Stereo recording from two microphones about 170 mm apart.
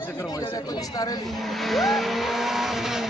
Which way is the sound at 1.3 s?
Centre (ahead or behind).